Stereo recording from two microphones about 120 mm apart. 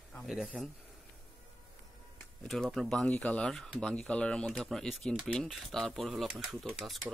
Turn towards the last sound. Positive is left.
turn(degrees=0)  # may be behind; listen again after turning